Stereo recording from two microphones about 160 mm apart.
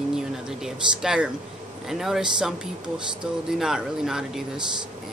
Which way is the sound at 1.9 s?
Centre (ahead or behind).